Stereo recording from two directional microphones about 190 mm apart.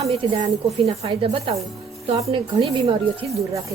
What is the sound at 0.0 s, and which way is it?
A woman's voice, 35° right (ahead or behind).